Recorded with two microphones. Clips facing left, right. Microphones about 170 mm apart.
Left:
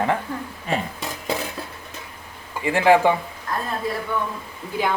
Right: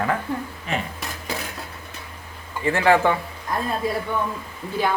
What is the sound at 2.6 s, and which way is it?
Speech, 15° left (ahead or behind).